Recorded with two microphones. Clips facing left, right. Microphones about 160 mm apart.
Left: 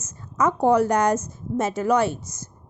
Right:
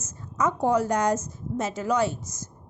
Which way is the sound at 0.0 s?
60° left (ahead or behind).